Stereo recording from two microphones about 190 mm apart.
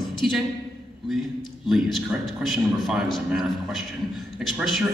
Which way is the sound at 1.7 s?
Centre (ahead or behind).